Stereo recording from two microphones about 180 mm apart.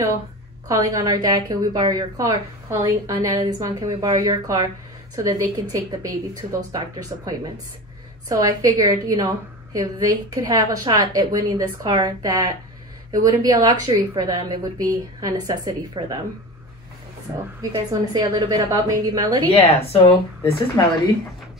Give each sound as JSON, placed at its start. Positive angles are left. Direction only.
{"t": 0.7, "sound": "a woman's voice", "side_deg": -20}
{"t": 17.3, "sound": "a woman's voice", "side_deg": -20}
{"t": 19.4, "sound": "speech", "side_deg": 35}
{"t": 20.8, "sound": "speech", "side_deg": 20}